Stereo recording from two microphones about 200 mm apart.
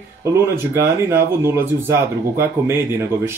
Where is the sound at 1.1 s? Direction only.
10° right (ahead or behind).